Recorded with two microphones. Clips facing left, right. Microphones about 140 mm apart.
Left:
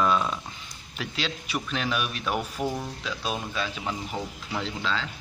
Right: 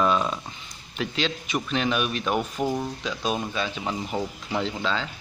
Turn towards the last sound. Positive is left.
turn(degrees=0)  # may be behind; listen again after turning